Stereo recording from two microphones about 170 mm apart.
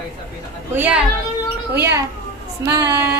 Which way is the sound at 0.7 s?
10° right (ahead or behind).